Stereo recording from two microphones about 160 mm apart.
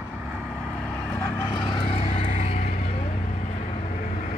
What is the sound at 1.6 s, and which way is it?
Vehicle, 35° left (ahead or behind).